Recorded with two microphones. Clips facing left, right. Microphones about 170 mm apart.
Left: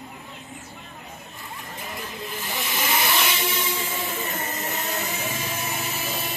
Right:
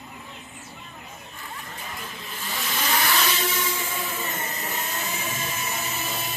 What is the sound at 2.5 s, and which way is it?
Vehicle, 15° left (ahead or behind).